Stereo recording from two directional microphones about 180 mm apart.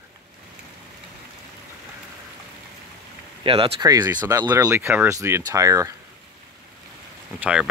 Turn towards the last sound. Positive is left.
turn(degrees=-5)  # may be behind; listen again after turning